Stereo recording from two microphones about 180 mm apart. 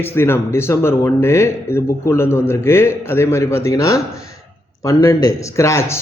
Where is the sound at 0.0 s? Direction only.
10° left (ahead or behind).